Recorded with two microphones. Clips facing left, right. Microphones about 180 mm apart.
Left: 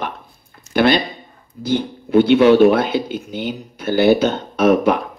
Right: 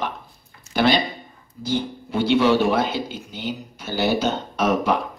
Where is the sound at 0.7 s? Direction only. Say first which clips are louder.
Left 4 dB; 60° left (ahead or behind).